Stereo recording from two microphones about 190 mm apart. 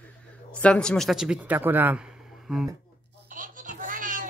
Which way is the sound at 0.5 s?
5° left (ahead or behind).